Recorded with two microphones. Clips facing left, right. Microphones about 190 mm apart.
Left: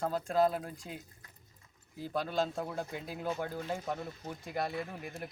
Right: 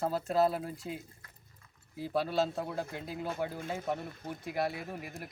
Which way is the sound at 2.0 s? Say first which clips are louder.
Right 2 dB; 5° right (ahead or behind).